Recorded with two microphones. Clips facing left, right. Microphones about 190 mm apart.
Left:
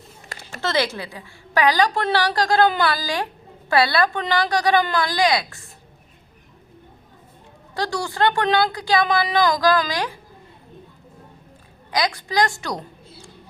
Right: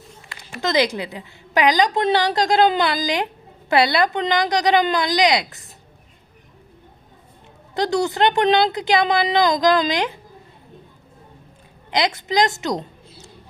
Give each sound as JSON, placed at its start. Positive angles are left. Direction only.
{"t": 0.6, "sound": "a woman's voice", "side_deg": -15}
{"t": 7.8, "sound": "a woman's voice", "side_deg": -20}
{"t": 11.9, "sound": "a woman's voice", "side_deg": -20}